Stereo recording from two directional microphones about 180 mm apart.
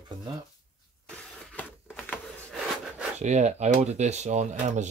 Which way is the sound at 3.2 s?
40° right (ahead or behind).